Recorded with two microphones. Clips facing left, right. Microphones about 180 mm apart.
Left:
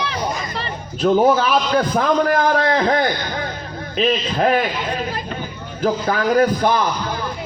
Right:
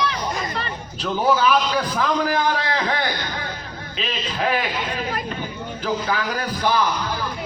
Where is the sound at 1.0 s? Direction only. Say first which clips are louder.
Left 5 dB; 50° left (ahead or behind).